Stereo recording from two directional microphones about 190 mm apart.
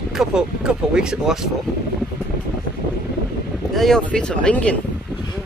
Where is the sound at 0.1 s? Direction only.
Centre (ahead or behind).